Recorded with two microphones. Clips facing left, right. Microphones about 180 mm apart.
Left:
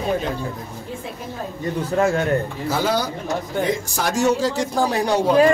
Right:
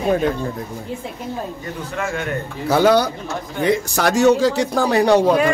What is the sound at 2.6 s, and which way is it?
A man's voice, 65° right (ahead or behind).